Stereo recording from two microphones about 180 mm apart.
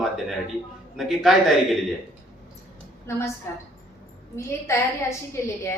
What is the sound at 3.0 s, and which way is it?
Speech, 15° left (ahead or behind).